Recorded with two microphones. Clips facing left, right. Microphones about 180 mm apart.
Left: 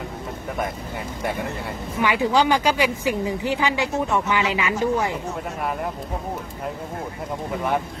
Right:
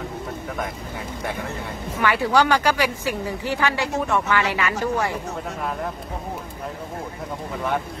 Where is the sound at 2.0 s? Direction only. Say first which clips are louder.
Even; 15° left (ahead or behind).